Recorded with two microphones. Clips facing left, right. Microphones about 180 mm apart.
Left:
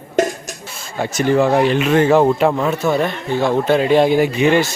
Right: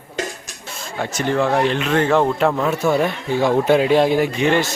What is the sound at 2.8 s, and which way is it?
Speech, 10° right (ahead or behind).